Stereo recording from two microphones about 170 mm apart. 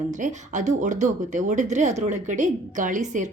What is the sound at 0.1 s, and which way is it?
A woman's voice, 45° right (ahead or behind).